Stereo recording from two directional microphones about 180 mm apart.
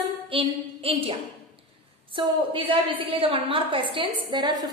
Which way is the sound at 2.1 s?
30° right (ahead or behind).